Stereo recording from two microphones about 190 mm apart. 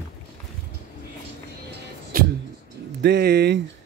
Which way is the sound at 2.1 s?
50° right (ahead or behind).